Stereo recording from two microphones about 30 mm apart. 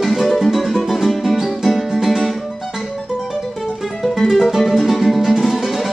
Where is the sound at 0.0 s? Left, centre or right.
Centre.